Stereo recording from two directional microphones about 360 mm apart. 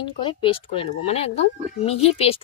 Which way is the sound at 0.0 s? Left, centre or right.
Centre.